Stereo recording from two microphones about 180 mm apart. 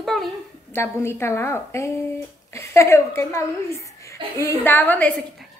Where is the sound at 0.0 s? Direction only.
Centre (ahead or behind).